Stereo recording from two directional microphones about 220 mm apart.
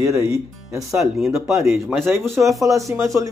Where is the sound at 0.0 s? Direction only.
15° right (ahead or behind).